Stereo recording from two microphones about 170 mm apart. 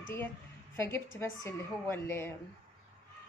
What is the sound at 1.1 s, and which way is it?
Speech, 15° left (ahead or behind).